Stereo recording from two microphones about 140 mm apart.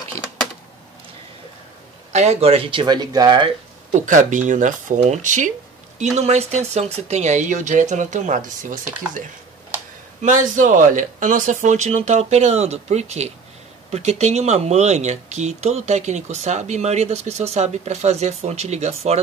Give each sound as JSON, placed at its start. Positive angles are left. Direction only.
{"t": 2.1, "sound": "speech", "side_deg": -50}
{"t": 3.9, "sound": "speech", "side_deg": -65}
{"t": 6.1, "sound": "speech", "side_deg": -50}
{"t": 10.2, "sound": "speech", "side_deg": -65}